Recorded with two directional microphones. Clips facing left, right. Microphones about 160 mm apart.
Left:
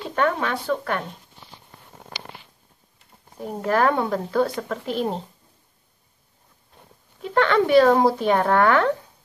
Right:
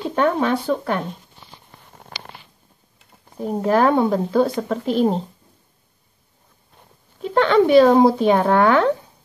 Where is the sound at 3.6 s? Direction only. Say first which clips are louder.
Right 4 dB; 20° right (ahead or behind).